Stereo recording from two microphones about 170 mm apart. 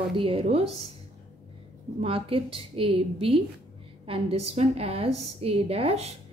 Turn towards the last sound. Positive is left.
turn(degrees=-35)  # may be behind; listen again after turning